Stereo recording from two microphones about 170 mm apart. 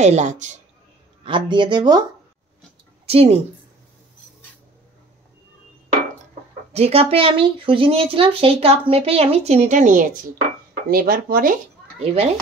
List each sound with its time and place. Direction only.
0.0 s speech: 45° right (ahead or behind)
1.2 s speech: 30° right (ahead or behind)
3.1 s speech: 35° right (ahead or behind)
6.7 s speech: 35° right (ahead or behind)
10.9 s speech: 60° right (ahead or behind)
12.0 s speech: 35° right (ahead or behind)